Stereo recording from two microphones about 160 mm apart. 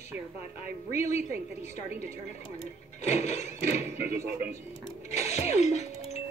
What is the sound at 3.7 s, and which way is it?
Speech, 15° right (ahead or behind).